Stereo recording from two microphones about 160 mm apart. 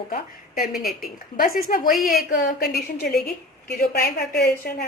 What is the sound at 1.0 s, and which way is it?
Speech, 65° left (ahead or behind).